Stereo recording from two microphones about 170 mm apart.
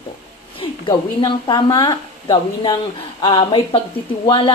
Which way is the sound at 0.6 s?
25° left (ahead or behind).